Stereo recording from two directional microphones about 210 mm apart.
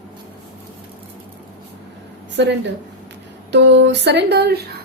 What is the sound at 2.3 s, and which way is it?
Speech, 55° right (ahead or behind).